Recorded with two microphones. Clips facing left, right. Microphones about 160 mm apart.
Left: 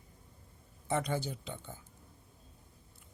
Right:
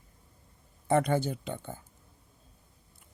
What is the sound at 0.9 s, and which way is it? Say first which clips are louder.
Speech: right 8 dB; 55° right (ahead or behind).